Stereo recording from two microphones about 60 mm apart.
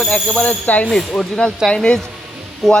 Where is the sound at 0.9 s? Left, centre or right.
Centre.